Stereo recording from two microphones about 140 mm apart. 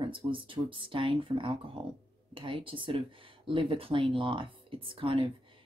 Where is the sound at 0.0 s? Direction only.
40° right (ahead or behind).